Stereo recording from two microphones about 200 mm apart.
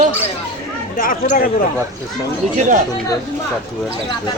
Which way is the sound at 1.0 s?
40° left (ahead or behind).